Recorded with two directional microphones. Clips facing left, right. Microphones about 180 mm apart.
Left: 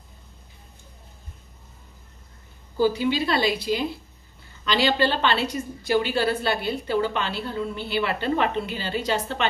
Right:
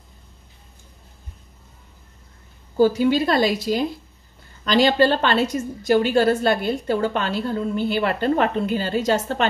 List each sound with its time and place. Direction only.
2.8 s a woman's voice: 45° right (ahead or behind)